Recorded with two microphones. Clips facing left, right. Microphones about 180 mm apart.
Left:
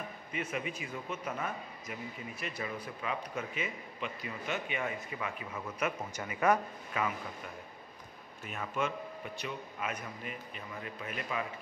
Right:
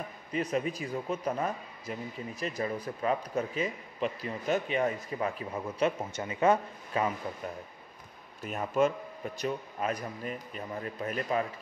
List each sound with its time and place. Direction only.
0.3 s a man's voice: 35° right (ahead or behind)
8.5 s a man's voice: 40° right (ahead or behind)